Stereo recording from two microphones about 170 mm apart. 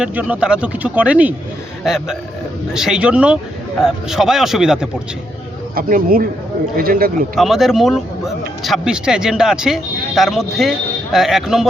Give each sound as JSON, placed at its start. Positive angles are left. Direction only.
{"t": 0.0, "sound": "speech", "side_deg": -10}
{"t": 5.7, "sound": "speech", "side_deg": -60}
{"t": 7.3, "sound": "speech", "side_deg": 0}